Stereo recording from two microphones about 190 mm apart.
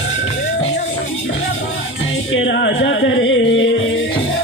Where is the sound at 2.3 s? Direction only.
75° left (ahead or behind).